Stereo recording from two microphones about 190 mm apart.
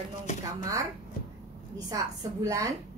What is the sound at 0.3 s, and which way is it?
Speech, 40° left (ahead or behind).